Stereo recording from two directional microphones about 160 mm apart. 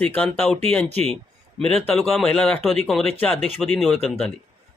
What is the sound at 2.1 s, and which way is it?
Speech, 5° left (ahead or behind).